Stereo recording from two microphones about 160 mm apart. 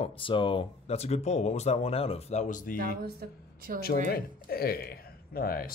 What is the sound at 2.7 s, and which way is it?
Speech, 70° right (ahead or behind).